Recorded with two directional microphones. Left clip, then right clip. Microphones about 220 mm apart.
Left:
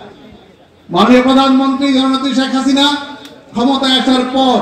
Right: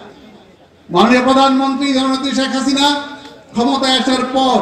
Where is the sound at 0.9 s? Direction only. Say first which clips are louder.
Left 1 dB; 15° right (ahead or behind).